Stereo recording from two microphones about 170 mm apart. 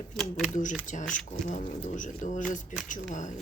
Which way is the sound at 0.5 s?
50° left (ahead or behind).